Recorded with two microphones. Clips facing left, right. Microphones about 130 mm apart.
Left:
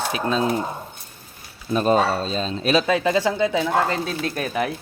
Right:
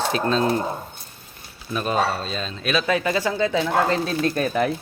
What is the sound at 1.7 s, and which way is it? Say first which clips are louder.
Speech: left 4 dB; 35° left (ahead or behind).